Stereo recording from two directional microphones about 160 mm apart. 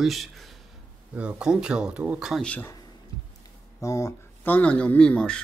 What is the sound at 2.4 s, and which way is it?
Speech, 10° left (ahead or behind).